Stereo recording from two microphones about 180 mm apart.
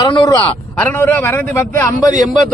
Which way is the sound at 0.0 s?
25° left (ahead or behind).